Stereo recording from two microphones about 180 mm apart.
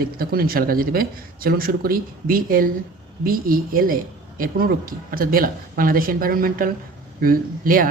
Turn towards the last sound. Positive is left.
turn(degrees=-50)  # may be behind; listen again after turning